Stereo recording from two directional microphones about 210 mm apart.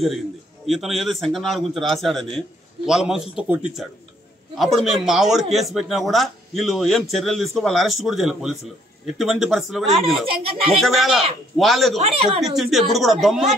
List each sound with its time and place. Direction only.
0.7 s a man's voice: centre (ahead or behind)
10.2 s speech: 25° right (ahead or behind)
10.8 s a man's voice: centre (ahead or behind)